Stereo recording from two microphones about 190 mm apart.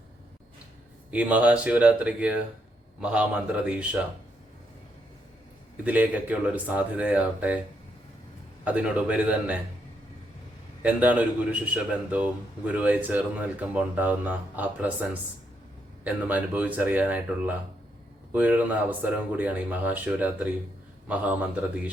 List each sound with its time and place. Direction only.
1.1 s a man's voice: 5° right (ahead or behind)
5.8 s a man's voice: 10° right (ahead or behind)
8.6 s a man's voice: 5° right (ahead or behind)
10.8 s a man's voice: 5° right (ahead or behind)